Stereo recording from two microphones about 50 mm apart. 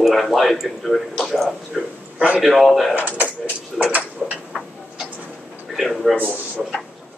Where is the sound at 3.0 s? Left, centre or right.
Left.